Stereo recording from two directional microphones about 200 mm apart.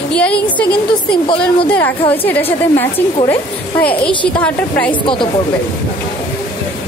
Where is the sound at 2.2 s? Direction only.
10° left (ahead or behind).